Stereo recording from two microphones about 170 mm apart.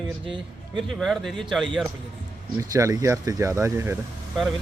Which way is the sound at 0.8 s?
Centre (ahead or behind).